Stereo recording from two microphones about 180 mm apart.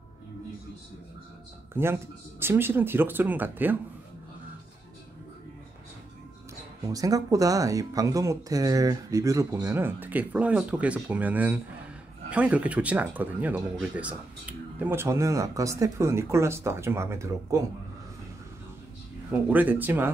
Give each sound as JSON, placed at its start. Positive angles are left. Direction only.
{"t": 1.7, "sound": "speech", "side_deg": -15}
{"t": 6.8, "sound": "speech", "side_deg": -20}
{"t": 19.3, "sound": "speech", "side_deg": -10}